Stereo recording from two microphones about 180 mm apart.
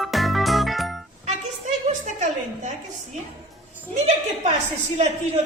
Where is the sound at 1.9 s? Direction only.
45° right (ahead or behind).